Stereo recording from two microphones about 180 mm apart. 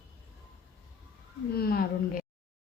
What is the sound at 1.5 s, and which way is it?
Speech, 60° left (ahead or behind).